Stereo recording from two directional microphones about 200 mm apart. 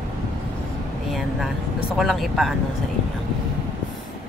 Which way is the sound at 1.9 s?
Centre (ahead or behind).